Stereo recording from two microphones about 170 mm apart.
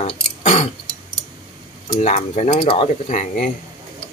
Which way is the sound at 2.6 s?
35° left (ahead or behind).